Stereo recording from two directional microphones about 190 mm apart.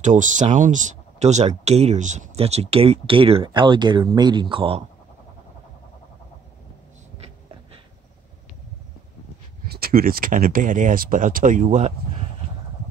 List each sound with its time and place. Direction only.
0.0 s speech: 40° right (ahead or behind)
9.7 s speech: 50° right (ahead or behind)